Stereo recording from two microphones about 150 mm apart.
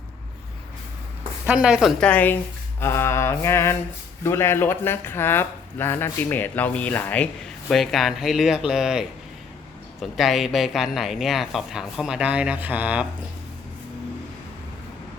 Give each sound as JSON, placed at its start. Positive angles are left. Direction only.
{"t": 1.5, "sound": "speech", "side_deg": -5}
{"t": 2.0, "sound": "speech", "side_deg": 10}